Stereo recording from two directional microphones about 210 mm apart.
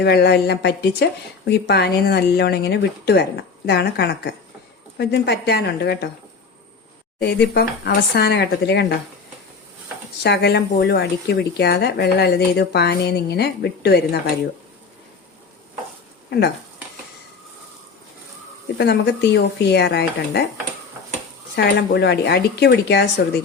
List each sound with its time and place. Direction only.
0.0 s speech: 50° left (ahead or behind)
7.2 s speech: 50° left (ahead or behind)
10.2 s speech: 55° left (ahead or behind)
18.8 s speech: 50° left (ahead or behind)
21.5 s speech: 55° left (ahead or behind)